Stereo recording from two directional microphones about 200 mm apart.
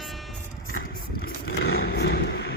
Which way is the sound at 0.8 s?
50° left (ahead or behind).